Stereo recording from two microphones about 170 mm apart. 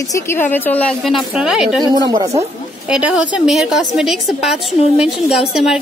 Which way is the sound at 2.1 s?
20° right (ahead or behind).